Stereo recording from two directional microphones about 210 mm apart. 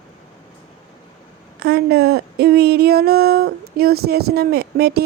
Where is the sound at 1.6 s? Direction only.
50° right (ahead or behind).